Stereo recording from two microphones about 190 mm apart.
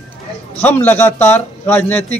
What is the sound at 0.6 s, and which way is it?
A man's voice, 10° left (ahead or behind).